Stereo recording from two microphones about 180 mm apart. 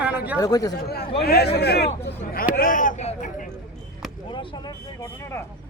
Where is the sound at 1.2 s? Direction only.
60° left (ahead or behind).